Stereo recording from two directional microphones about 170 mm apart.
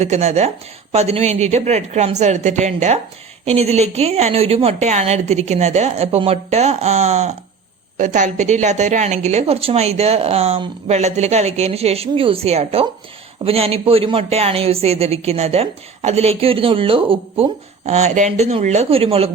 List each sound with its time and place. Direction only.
0.0 s a woman's voice: 40° right (ahead or behind)